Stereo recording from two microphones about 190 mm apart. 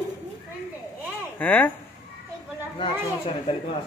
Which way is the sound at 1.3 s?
10° left (ahead or behind).